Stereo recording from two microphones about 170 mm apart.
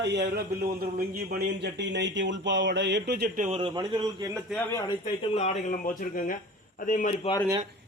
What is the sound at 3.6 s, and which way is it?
Speech, 30° right (ahead or behind).